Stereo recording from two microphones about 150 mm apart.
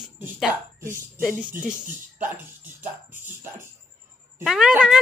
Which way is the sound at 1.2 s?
10° right (ahead or behind).